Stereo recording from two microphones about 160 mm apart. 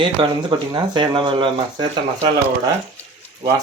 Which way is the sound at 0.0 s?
30° right (ahead or behind).